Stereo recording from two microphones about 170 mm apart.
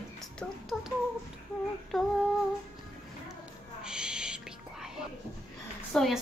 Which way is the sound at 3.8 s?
5° right (ahead or behind).